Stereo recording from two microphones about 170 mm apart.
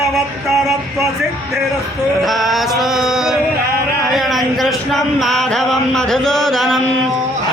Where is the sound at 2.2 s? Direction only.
Centre (ahead or behind).